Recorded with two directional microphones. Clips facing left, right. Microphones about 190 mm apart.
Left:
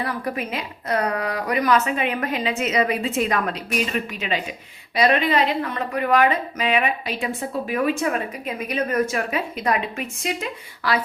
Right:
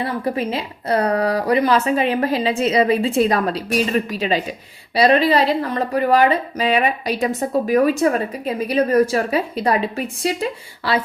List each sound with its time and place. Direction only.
0.0 s speech: 25° right (ahead or behind)